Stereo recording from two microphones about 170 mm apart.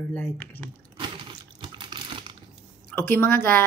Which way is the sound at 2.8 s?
10° left (ahead or behind).